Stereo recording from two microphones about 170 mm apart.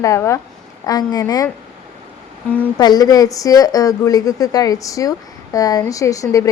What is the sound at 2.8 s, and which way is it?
Speech, 25° left (ahead or behind).